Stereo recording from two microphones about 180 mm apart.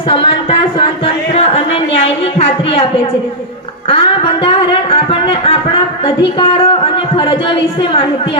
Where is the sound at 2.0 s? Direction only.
35° left (ahead or behind).